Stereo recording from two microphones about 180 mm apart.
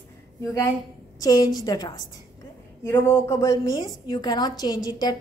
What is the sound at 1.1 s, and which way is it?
A woman's voice, 20° left (ahead or behind).